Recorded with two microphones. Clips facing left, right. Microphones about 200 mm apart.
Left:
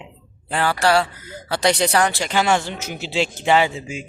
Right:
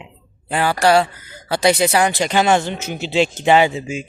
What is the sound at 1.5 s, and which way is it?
Speech, 10° right (ahead or behind).